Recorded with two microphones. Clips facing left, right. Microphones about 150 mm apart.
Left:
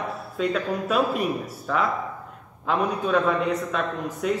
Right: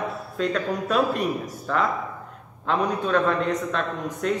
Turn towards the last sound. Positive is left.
turn(degrees=5)  # may be behind; listen again after turning